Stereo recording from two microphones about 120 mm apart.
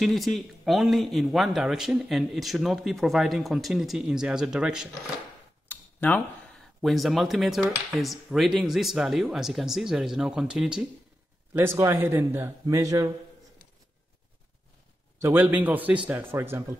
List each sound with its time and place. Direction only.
0.0 s speech: centre (ahead or behind)
5.7 s cutlery: 15° left (ahead or behind)
6.8 s speech: centre (ahead or behind)
11.5 s a man's voice: 20° right (ahead or behind)
15.1 s a man's voice: 15° right (ahead or behind)